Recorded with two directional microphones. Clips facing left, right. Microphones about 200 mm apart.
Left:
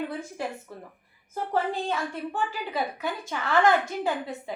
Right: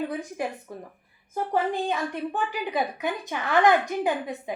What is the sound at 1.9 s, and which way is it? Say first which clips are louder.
A woman's voice: right 2 dB; 20° right (ahead or behind).